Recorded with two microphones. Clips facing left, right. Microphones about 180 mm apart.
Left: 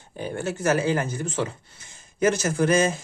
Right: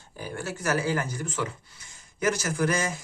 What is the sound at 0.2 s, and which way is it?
Speech, 25° left (ahead or behind).